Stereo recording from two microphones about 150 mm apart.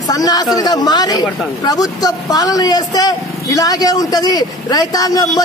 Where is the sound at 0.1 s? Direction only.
25° left (ahead or behind).